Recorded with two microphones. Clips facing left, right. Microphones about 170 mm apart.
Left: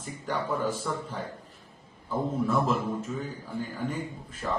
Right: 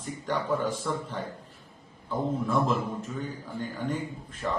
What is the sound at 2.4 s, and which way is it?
Speech, 5° left (ahead or behind).